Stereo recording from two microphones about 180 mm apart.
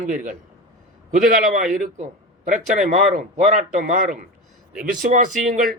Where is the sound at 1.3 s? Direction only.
50° right (ahead or behind).